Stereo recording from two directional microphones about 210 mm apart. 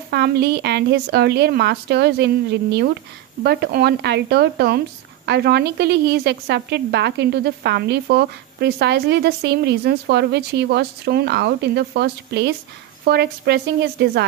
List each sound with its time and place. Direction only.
0.1 s speech: 50° right (ahead or behind)